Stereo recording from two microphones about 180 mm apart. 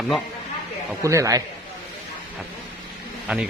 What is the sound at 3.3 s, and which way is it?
Speech, 5° right (ahead or behind).